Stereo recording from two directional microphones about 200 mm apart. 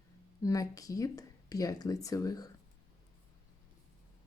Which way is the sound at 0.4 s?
15° left (ahead or behind).